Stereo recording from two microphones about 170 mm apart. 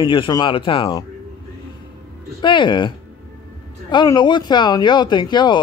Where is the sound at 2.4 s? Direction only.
30° left (ahead or behind).